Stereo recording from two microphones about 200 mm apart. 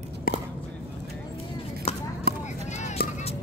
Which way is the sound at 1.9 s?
30° left (ahead or behind).